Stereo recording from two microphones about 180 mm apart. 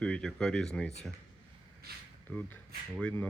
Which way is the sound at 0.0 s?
5° left (ahead or behind).